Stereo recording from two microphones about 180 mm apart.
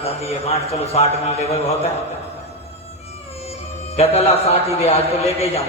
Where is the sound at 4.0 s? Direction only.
35° left (ahead or behind).